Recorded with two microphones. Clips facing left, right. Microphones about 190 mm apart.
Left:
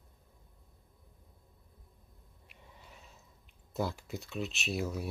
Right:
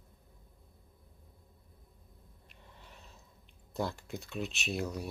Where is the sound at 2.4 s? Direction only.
5° left (ahead or behind).